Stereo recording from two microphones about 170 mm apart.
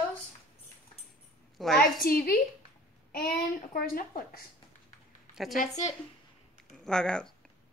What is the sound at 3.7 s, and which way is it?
Speech, 60° left (ahead or behind).